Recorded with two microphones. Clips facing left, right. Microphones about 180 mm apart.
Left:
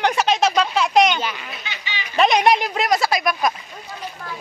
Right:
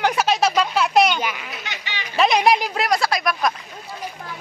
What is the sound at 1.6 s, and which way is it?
Speech, 65° right (ahead or behind).